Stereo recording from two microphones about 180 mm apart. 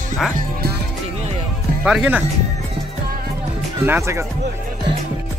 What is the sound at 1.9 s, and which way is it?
Speech, 5° right (ahead or behind).